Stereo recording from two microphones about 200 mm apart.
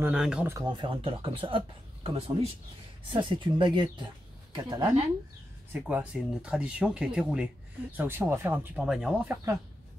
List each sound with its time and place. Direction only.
0.0 s speech: 5° right (ahead or behind)
0.6 s speech: 20° right (ahead or behind)
5.7 s speech: 5° right (ahead or behind)